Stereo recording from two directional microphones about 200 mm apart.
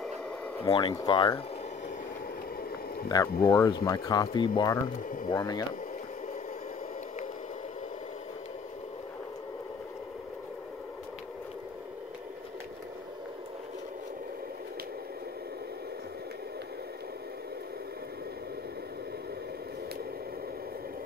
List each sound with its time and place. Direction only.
0.7 s speech: 25° left (ahead or behind)
3.1 s speech: 15° left (ahead or behind)